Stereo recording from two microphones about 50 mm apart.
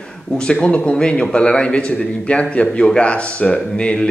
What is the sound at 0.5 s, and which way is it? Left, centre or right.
A man's voice, left.